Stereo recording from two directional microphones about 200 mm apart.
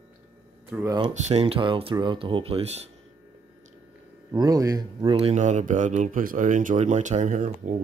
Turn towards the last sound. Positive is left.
turn(degrees=-40)  # may be behind; listen again after turning